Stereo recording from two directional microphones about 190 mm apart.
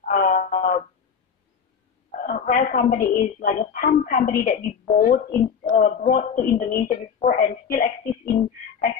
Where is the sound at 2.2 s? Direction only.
45° left (ahead or behind).